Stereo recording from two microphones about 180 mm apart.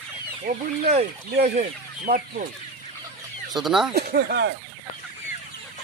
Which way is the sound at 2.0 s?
55° right (ahead or behind).